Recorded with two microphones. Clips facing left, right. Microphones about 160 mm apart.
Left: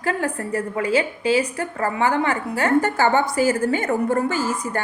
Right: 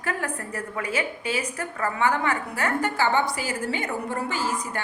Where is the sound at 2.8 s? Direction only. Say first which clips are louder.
Left 3 dB; 45° left (ahead or behind).